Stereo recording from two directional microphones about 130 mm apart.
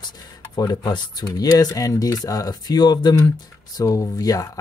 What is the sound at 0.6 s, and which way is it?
Speech, 30° left (ahead or behind).